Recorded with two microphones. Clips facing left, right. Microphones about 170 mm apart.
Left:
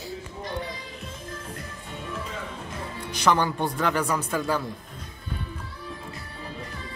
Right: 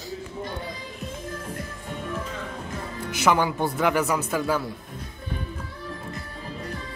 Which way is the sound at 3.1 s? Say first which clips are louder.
Right 1 dB; 10° right (ahead or behind).